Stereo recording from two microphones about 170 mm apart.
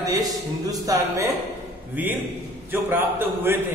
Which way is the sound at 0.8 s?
20° right (ahead or behind).